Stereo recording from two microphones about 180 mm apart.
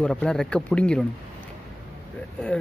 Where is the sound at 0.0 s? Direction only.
5° left (ahead or behind).